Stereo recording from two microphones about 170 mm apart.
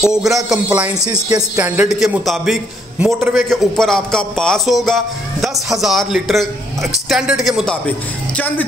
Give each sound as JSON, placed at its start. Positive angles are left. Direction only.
{"t": 0.0, "sound": "a man's voice", "side_deg": 0}